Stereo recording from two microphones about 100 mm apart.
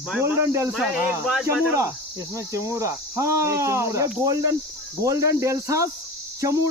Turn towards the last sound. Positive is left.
turn(degrees=-35)  # may be behind; listen again after turning